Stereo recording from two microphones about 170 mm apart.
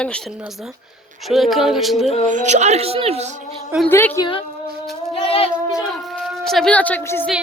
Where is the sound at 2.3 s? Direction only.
45° right (ahead or behind).